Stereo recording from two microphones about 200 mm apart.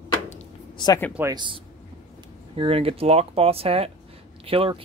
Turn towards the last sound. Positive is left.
turn(degrees=-25)  # may be behind; listen again after turning